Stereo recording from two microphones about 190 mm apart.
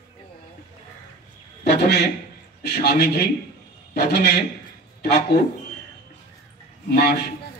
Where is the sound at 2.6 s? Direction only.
55° left (ahead or behind).